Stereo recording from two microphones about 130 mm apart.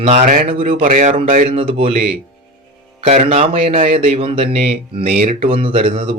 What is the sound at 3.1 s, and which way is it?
Speech, 60° right (ahead or behind).